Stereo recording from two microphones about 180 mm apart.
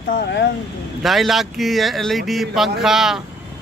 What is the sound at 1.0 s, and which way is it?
A man's voice, centre (ahead or behind).